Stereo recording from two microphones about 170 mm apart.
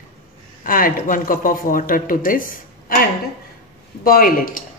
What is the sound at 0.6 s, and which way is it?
Speech, 55° left (ahead or behind).